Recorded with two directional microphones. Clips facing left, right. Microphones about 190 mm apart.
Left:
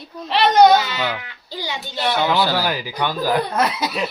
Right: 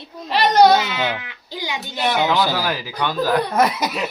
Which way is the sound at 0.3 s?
5° right (ahead or behind).